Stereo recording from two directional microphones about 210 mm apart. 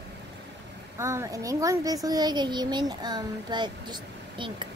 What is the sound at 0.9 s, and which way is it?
A woman's voice, 15° right (ahead or behind).